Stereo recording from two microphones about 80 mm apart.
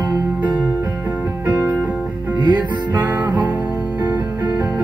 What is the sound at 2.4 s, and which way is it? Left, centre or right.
Music, right.